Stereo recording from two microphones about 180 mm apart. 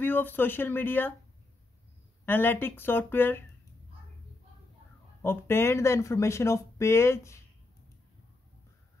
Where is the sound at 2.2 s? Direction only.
10° left (ahead or behind).